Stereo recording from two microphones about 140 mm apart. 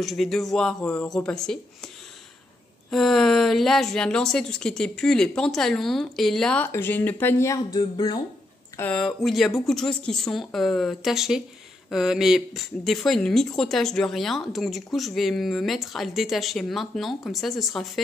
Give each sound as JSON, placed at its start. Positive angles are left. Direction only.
{"t": 0.0, "sound": "speech", "side_deg": 0}
{"t": 2.9, "sound": "speech", "side_deg": 0}
{"t": 8.9, "sound": "speech", "side_deg": 0}